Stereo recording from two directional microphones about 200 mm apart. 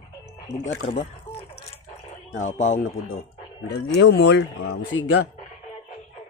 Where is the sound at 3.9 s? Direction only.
60° left (ahead or behind).